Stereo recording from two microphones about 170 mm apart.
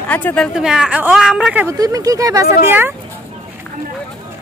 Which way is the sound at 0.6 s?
5° right (ahead or behind).